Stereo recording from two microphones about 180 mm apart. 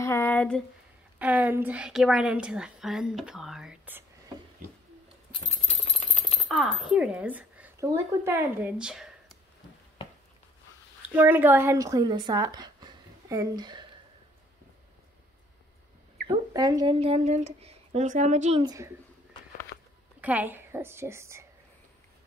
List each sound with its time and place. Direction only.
0.0 s a sound: 15° left (ahead or behind)
1.2 s a woman's voice: 10° right (ahead or behind)
5.3 s a sound: 35° left (ahead or behind)
6.4 s speech: centre (ahead or behind)
11.0 s speech: 10° right (ahead or behind)
16.3 s speech: 20° right (ahead or behind)
17.0 s a woman's voice: 35° right (ahead or behind)
20.2 s a woman's voice: 10° right (ahead or behind)